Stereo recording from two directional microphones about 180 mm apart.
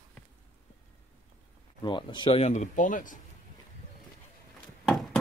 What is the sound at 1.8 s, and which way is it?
Speech, 25° left (ahead or behind).